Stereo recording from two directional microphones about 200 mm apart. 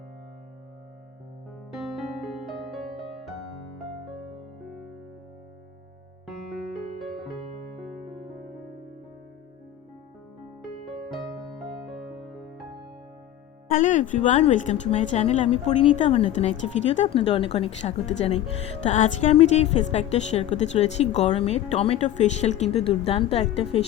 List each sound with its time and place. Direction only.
1.7 s music: centre (ahead or behind)
6.2 s music: centre (ahead or behind)
11.9 s music: centre (ahead or behind)
13.7 s a woman's voice: 40° left (ahead or behind)